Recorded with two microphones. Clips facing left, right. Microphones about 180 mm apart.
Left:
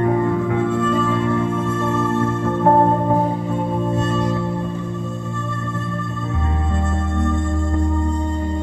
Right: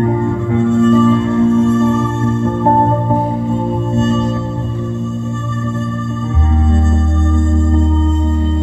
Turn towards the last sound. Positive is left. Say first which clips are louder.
# right 6 dB
turn(degrees=-25)  # may be behind; listen again after turning